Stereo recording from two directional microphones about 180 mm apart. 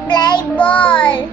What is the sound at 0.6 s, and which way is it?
Speech, 5° left (ahead or behind).